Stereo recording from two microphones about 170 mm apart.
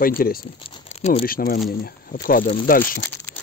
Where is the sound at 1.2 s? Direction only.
60° left (ahead or behind).